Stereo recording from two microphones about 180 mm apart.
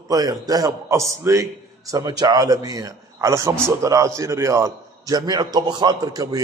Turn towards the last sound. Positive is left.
turn(degrees=-20)  # may be behind; listen again after turning